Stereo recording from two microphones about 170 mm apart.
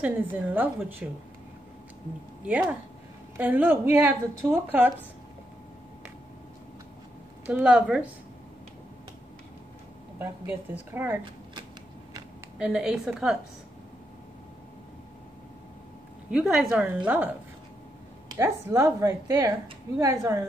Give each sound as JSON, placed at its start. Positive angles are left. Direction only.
{"t": 0.0, "sound": "speech", "side_deg": -10}
{"t": 2.4, "sound": "speech", "side_deg": -10}
{"t": 7.4, "sound": "a woman's voice", "side_deg": -5}
{"t": 10.7, "sound": "speech", "side_deg": -10}
{"t": 12.5, "sound": "a woman's voice", "side_deg": -5}
{"t": 16.3, "sound": "speech", "side_deg": -5}
{"t": 18.4, "sound": "speech", "side_deg": -15}